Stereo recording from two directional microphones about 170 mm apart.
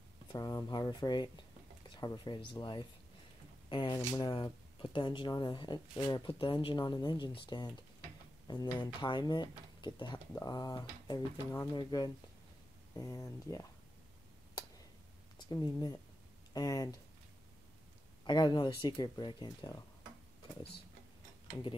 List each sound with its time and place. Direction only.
0.3 s speech: 25° left (ahead or behind)
15.3 s speech: 25° left (ahead or behind)
18.2 s speech: 25° left (ahead or behind)